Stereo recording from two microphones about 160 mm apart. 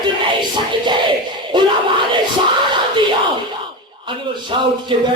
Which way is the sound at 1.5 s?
30° right (ahead or behind).